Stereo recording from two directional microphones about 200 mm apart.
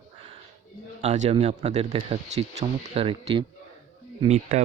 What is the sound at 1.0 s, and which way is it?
Speech, 35° right (ahead or behind).